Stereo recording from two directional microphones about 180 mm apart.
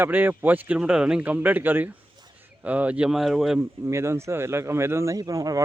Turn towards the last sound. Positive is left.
turn(degrees=-20)  # may be behind; listen again after turning